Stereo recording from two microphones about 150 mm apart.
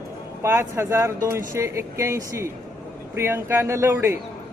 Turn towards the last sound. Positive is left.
turn(degrees=-15)  # may be behind; listen again after turning